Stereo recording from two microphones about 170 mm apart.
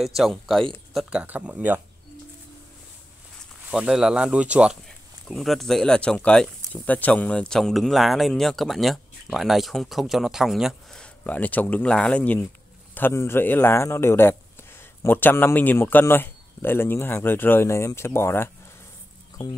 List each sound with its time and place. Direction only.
0.0 s speech: centre (ahead or behind)
3.7 s speech: 5° right (ahead or behind); by 18.5 s 15° left (ahead or behind)